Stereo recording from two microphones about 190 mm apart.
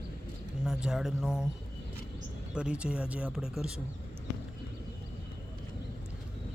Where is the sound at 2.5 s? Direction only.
5° right (ahead or behind).